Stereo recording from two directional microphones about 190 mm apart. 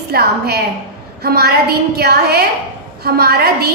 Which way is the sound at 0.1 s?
55° right (ahead or behind).